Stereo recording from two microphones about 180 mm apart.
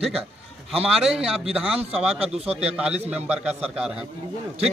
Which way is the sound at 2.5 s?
35° right (ahead or behind).